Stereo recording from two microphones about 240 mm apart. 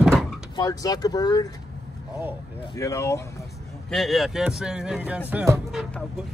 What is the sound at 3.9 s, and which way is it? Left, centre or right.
Speech, centre.